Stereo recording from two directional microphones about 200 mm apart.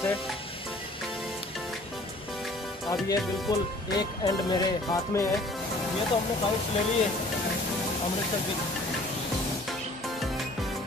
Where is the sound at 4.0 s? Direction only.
20° left (ahead or behind).